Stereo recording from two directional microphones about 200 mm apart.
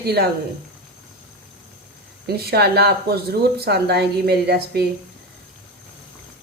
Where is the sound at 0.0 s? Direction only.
50° right (ahead or behind).